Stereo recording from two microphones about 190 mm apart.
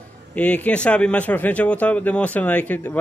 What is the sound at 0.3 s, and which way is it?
Speech, 5° left (ahead or behind).